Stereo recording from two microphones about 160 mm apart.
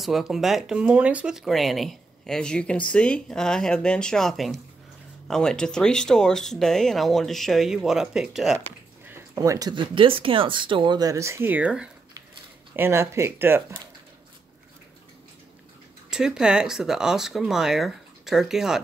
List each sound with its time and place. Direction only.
0.0 s speech: centre (ahead or behind)
9.1 s speech: 20° right (ahead or behind)
16.1 s speech: 5° right (ahead or behind)